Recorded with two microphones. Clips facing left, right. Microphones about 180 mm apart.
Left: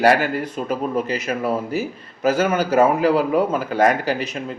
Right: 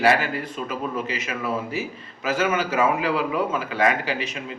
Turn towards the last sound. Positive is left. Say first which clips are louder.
# left 5 dB
turn(degrees=45)  # may be behind; listen again after turning